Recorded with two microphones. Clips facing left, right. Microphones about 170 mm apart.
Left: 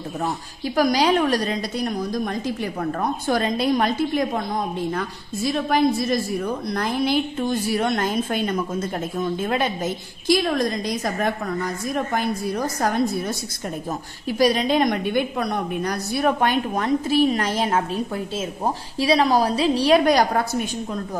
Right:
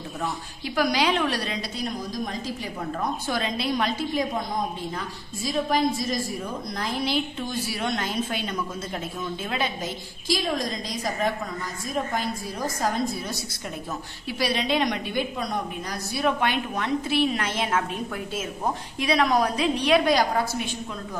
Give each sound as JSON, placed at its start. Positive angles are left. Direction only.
{"t": 0.7, "sound": "speech", "side_deg": 40}
{"t": 2.2, "sound": "a woman's voice", "side_deg": 60}
{"t": 14.4, "sound": "a woman's voice", "side_deg": 45}
{"t": 20.1, "sound": "speech", "side_deg": 45}